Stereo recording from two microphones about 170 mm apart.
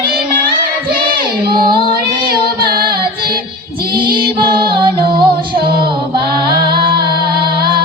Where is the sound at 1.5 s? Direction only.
30° right (ahead or behind).